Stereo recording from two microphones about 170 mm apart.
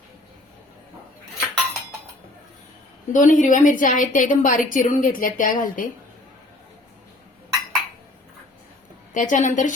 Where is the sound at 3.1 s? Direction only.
50° left (ahead or behind).